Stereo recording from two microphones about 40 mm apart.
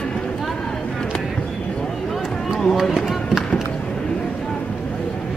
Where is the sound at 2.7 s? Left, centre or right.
Centre.